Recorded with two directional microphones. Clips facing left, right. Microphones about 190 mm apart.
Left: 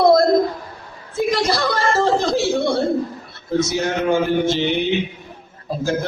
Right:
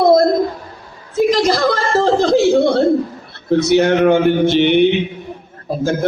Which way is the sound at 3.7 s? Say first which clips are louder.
Right 12 dB; 70° right (ahead or behind).